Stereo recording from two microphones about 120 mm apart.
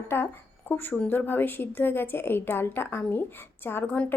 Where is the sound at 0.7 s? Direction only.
15° left (ahead or behind).